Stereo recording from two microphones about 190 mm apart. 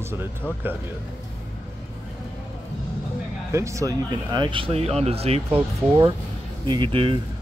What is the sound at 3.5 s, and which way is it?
Speech, 15° right (ahead or behind).